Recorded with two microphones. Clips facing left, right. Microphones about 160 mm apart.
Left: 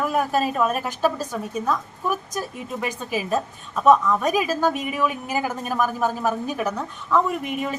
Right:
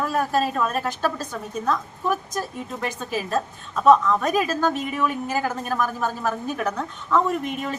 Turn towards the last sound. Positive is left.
turn(degrees=10)  # may be behind; listen again after turning